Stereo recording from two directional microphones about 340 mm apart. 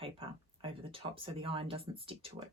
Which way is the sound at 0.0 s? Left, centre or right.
Centre.